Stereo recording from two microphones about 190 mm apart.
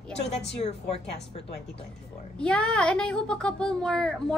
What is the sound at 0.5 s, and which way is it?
Speech, 30° left (ahead or behind).